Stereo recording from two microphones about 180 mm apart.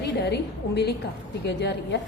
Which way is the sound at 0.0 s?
65° left (ahead or behind).